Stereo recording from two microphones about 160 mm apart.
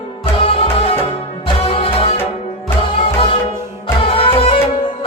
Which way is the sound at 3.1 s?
35° left (ahead or behind).